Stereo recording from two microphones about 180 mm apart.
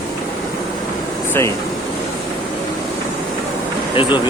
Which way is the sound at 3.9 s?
30° left (ahead or behind).